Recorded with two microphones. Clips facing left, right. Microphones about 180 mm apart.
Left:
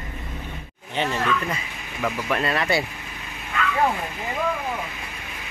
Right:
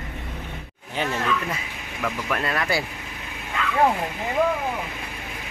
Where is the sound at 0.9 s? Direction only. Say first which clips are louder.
Left 1 dB; 5° right (ahead or behind).